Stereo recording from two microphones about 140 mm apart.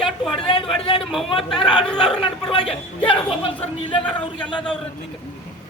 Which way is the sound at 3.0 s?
40° left (ahead or behind).